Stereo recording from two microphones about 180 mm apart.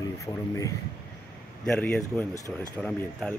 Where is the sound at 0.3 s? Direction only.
20° left (ahead or behind).